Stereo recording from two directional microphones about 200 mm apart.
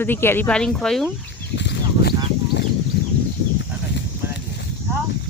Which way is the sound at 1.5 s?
60° left (ahead or behind).